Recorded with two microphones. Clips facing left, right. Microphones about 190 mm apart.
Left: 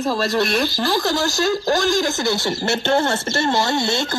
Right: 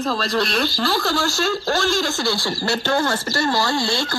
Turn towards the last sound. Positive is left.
turn(degrees=20)  # may be behind; listen again after turning